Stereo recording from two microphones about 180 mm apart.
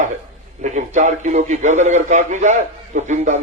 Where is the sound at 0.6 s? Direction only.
40° right (ahead or behind).